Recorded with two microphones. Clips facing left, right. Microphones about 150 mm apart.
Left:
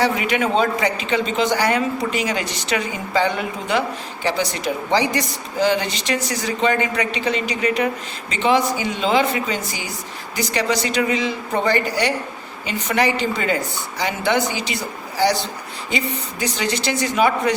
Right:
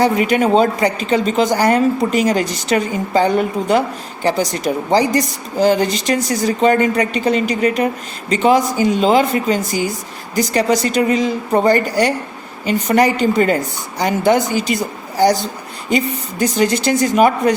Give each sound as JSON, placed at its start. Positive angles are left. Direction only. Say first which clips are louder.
{"t": 0.0, "sound": "a woman's voice", "louder": "right 5 dB", "side_deg": -40}
{"t": 15.9, "sound": "a woman's voice", "louder": "right 7 dB", "side_deg": -45}